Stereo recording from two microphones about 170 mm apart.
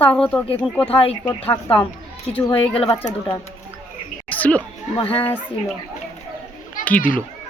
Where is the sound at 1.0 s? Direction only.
35° left (ahead or behind).